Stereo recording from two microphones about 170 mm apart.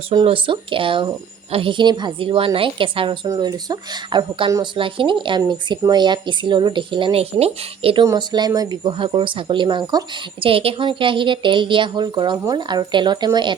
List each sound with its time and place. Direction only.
0.1 s speech: 30° right (ahead or behind)
8.0 s speech: 25° right (ahead or behind)